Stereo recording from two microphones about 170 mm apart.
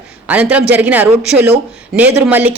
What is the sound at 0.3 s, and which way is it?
A woman's voice, 10° right (ahead or behind).